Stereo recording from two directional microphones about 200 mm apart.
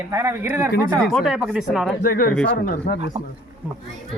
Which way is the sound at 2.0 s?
45° left (ahead or behind).